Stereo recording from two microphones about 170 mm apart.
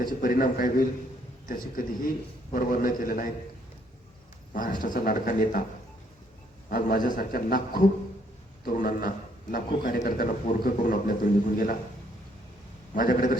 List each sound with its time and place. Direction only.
0.0 s a man's voice: 55° left (ahead or behind)
4.5 s a man's voice: 55° left (ahead or behind)
6.7 s a man's voice: 55° left (ahead or behind)
12.9 s a man's voice: 55° left (ahead or behind)